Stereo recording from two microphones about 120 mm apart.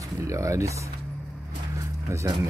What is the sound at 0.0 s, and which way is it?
Music, 25° right (ahead or behind).